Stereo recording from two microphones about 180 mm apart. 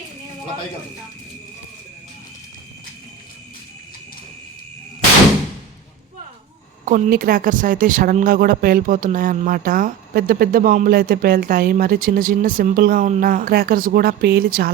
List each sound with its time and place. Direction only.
6.8 s speech: 45° right (ahead or behind)